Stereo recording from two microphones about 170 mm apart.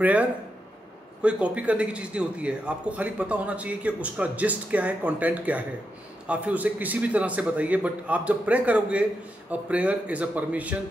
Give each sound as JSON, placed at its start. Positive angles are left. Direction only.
{"t": 0.0, "sound": "a man's voice", "side_deg": -10}